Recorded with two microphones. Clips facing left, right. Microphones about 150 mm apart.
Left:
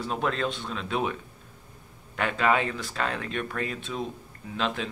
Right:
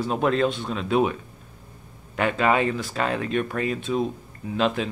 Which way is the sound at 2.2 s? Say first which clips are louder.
Right 4 dB; 5° right (ahead or behind).